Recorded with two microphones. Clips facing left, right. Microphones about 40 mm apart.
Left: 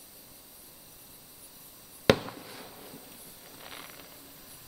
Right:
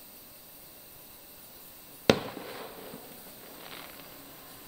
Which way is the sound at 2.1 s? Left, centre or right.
Centre.